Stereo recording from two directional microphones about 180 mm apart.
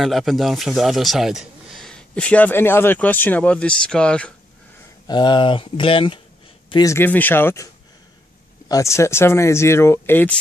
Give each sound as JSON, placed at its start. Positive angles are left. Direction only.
{"t": 0.0, "sound": "a man's voice", "side_deg": 0}
{"t": 5.0, "sound": "speech", "side_deg": 25}
{"t": 6.7, "sound": "speech", "side_deg": 20}